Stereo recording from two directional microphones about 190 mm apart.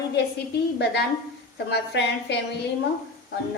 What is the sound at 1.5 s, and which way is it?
Speech, 65° left (ahead or behind).